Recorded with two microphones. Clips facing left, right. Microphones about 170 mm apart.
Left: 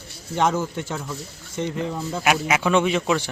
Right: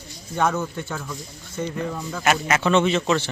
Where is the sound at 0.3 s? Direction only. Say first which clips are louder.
Left 1 dB; 25° left (ahead or behind).